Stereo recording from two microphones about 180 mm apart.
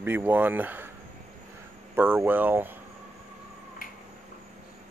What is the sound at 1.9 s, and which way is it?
Speech, 10° right (ahead or behind).